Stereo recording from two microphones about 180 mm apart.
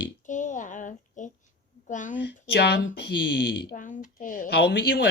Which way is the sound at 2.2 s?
65° left (ahead or behind).